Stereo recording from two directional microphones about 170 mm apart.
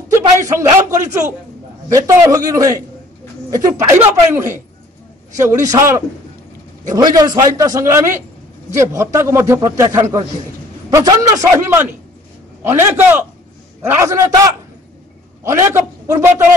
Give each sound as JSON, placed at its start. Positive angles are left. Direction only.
{"t": 0.2, "sound": "a man's voice", "side_deg": -20}
{"t": 4.0, "sound": "a man's voice", "side_deg": -15}